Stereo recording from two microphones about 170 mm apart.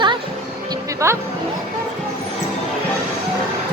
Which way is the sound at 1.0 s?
15° right (ahead or behind).